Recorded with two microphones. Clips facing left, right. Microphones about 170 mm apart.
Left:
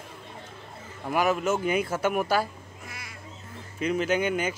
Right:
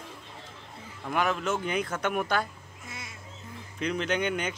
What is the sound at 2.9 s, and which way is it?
Duck, 25° right (ahead or behind).